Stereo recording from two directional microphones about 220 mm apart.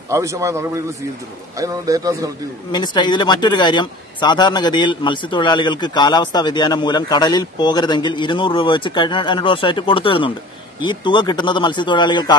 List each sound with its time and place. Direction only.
0.1 s a man's voice: 15° right (ahead or behind)
2.7 s speech: 20° left (ahead or behind)